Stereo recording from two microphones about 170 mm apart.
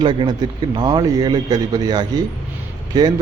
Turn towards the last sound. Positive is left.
turn(degrees=-25)  # may be behind; listen again after turning